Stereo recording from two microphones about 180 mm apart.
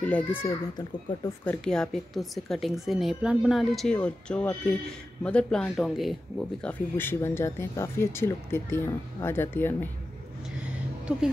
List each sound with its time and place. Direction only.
0.4 s a child's voice: 20° left (ahead or behind)
1.4 s a woman's voice: 5° left (ahead or behind)
6.6 s speech: 10° left (ahead or behind)